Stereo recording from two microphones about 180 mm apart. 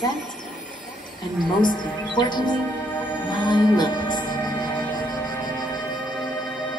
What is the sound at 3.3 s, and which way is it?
Music, 25° left (ahead or behind).